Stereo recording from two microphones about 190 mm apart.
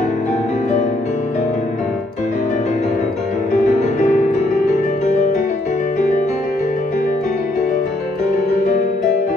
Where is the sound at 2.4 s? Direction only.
40° left (ahead or behind).